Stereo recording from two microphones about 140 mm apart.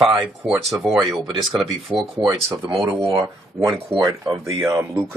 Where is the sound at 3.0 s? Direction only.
40° right (ahead or behind).